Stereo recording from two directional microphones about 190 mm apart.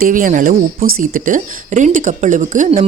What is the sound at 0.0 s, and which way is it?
Speech, 45° right (ahead or behind).